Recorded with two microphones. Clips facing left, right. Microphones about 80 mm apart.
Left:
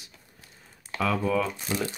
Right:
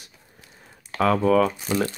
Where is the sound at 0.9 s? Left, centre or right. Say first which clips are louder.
Right 7 dB; right.